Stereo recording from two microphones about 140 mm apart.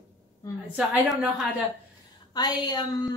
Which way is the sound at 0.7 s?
10° right (ahead or behind).